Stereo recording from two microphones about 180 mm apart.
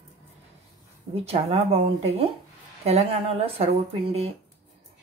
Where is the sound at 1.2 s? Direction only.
35° right (ahead or behind).